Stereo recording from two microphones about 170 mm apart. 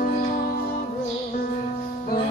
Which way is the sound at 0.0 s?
55° left (ahead or behind).